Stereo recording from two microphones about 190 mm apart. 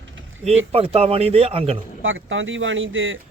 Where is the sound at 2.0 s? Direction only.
90° right.